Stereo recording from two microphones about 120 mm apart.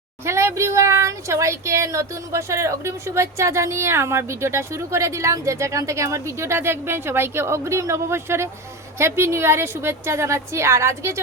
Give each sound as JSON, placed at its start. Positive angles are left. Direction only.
{"t": 0.3, "sound": "speech", "side_deg": -25}